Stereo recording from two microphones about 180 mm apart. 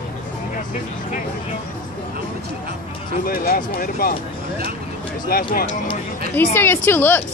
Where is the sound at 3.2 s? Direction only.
55° left (ahead or behind).